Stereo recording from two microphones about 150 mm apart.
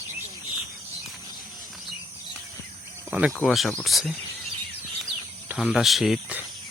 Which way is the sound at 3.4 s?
Centre (ahead or behind).